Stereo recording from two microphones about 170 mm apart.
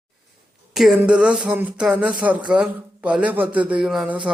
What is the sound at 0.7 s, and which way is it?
Speech, centre (ahead or behind).